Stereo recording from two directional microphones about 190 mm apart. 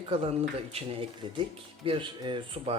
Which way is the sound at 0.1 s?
30° right (ahead or behind).